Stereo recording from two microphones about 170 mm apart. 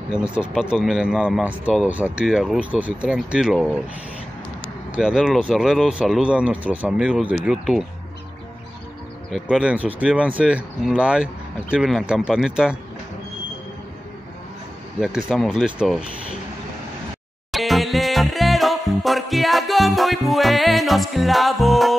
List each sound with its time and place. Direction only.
0.3 s speech: 5° right (ahead or behind)
4.9 s speech: 5° right (ahead or behind)
9.3 s speech: 5° right (ahead or behind)
15.0 s speech: centre (ahead or behind)
17.5 s music: centre (ahead or behind)